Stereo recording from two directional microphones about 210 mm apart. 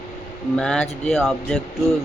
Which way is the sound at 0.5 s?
5° left (ahead or behind).